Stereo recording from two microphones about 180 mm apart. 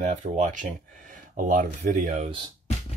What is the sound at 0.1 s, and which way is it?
Speech, 45° right (ahead or behind).